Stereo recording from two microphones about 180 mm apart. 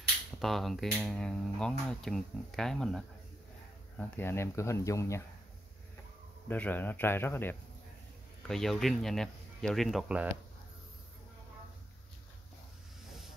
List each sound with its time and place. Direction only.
0.4 s speech: centre (ahead or behind); by 5.2 s 15° left (ahead or behind)
6.5 s speech: 10° left (ahead or behind)